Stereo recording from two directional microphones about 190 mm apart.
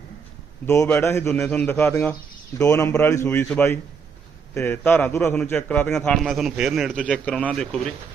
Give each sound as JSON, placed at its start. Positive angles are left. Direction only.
{"t": 0.7, "sound": "a man's voice", "side_deg": 15}